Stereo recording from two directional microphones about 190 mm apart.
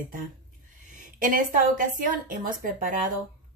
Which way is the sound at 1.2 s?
45° right (ahead or behind).